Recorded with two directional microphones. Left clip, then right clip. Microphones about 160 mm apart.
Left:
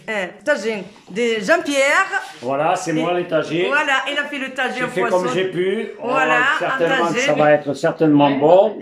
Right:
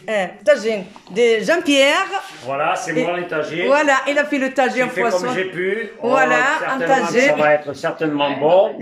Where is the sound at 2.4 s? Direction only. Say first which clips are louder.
Left 1 dB; 25° left (ahead or behind).